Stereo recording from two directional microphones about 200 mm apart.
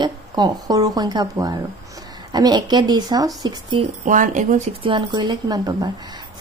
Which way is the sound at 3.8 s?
40° right (ahead or behind).